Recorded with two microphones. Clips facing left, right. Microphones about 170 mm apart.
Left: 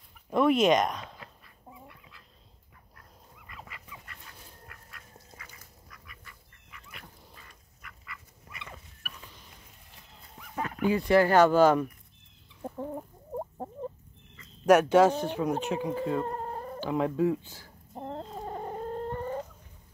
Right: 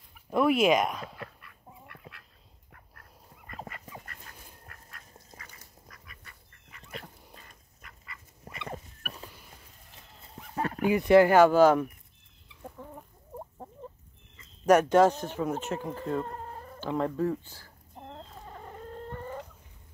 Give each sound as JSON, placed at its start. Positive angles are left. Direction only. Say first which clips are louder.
{"t": 0.3, "sound": "speech", "louder": "left 1 dB", "side_deg": -5}
{"t": 1.1, "sound": "duck", "louder": "right 6 dB", "side_deg": -65}
{"t": 2.7, "sound": "duck", "louder": "right 1 dB", "side_deg": -50}
{"t": 6.7, "sound": "dog", "louder": "right 6 dB", "side_deg": -35}
{"t": 8.5, "sound": "a sound", "louder": "right 8 dB", "side_deg": -45}
{"t": 10.4, "sound": "a sound", "louder": "right 1 dB", "side_deg": -40}
{"t": 10.9, "sound": "speech", "louder": "right 3 dB", "side_deg": -20}
{"t": 11.3, "sound": "speech", "louder": "right 1 dB", "side_deg": -10}
{"t": 14.7, "sound": "speech", "louder": "left 1 dB", "side_deg": 10}
{"t": 16.3, "sound": "chicken", "louder": "left 6 dB", "side_deg": 45}
{"t": 16.8, "sound": "speech", "louder": "left 2 dB", "side_deg": 10}
{"t": 17.9, "sound": "chicken", "louder": "left 8 dB", "side_deg": 40}